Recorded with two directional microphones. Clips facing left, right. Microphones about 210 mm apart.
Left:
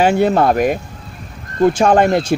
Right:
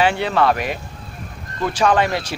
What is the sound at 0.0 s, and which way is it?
Speech, 45° left (ahead or behind).